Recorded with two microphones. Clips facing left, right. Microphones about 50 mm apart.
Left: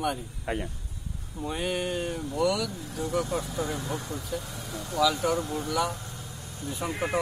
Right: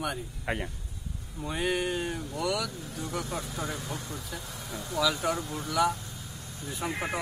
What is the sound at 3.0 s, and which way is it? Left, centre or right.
Speech, centre.